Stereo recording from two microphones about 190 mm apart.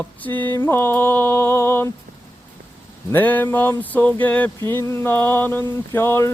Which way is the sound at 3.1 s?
10° left (ahead or behind).